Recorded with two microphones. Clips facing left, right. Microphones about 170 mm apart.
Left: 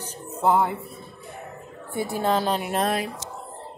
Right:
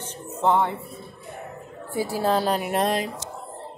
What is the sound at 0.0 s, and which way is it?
Music, 35° left (ahead or behind).